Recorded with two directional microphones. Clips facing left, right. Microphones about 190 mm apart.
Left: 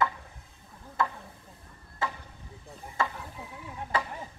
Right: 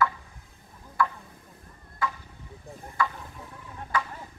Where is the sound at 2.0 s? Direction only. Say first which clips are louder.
Right 2 dB; 25° left (ahead or behind).